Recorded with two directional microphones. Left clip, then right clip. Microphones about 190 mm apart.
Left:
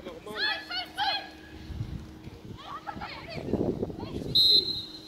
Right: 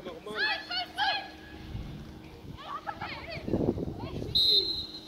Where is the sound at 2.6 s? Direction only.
20° left (ahead or behind).